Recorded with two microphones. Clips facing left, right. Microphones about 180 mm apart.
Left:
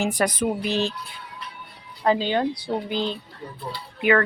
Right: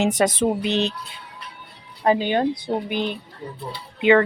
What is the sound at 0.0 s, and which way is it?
Speech, 20° right (ahead or behind).